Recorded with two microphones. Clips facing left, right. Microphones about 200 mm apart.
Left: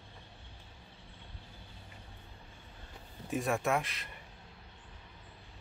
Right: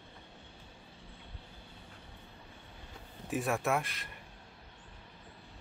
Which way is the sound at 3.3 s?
Centre (ahead or behind).